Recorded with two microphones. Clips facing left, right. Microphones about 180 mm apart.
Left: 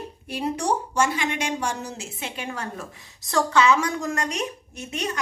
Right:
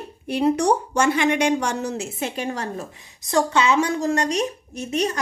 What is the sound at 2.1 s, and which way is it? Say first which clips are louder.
Speech: right 6 dB; 45° right (ahead or behind).